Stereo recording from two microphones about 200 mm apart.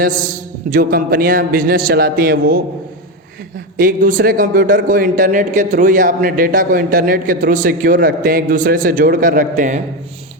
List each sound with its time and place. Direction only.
0.0 s a man's voice: 40° right (ahead or behind)
3.8 s a man's voice: 45° right (ahead or behind)